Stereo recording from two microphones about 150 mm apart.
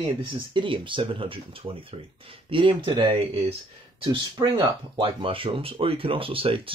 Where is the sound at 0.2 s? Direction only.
35° right (ahead or behind).